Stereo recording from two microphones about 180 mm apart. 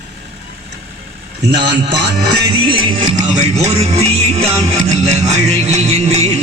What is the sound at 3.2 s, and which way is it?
Music, 40° right (ahead or behind).